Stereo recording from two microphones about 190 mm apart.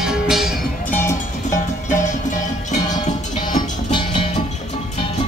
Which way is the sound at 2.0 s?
40° left (ahead or behind).